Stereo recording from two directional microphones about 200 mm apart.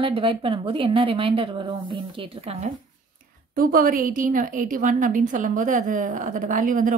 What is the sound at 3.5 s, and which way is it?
A woman's voice, 45° right (ahead or behind).